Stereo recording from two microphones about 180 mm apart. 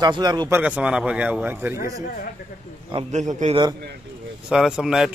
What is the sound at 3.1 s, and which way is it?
Speech, 40° right (ahead or behind).